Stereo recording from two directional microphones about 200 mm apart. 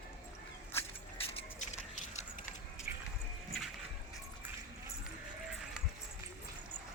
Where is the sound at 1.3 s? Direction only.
30° left (ahead or behind).